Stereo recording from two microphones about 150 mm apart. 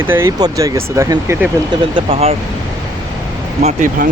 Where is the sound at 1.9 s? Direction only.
40° right (ahead or behind).